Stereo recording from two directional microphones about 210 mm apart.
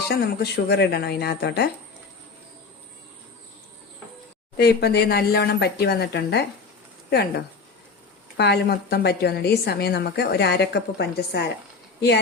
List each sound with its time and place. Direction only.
0.1 s a woman's voice: 50° left (ahead or behind)
4.5 s a woman's voice: 50° left (ahead or behind)